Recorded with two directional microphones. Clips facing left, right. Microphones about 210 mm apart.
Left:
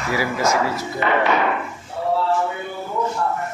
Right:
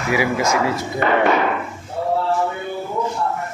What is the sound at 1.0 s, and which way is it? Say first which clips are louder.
Speech: right 2 dB; 45° right (ahead or behind).